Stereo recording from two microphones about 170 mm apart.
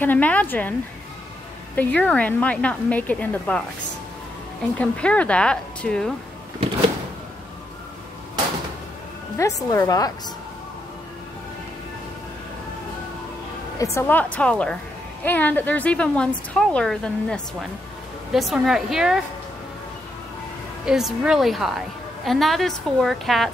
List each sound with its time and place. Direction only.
0.0 s a woman's voice: 10° left (ahead or behind)
1.8 s a woman's voice: 10° left (ahead or behind)
4.7 s a woman's voice: 5° left (ahead or behind)
9.4 s a woman's voice: 20° left (ahead or behind)
13.9 s a woman's voice: 10° left (ahead or behind)
20.8 s a woman's voice: 5° right (ahead or behind)